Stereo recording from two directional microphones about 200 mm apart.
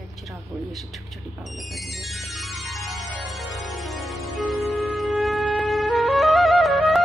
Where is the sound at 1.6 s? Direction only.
Centre (ahead or behind).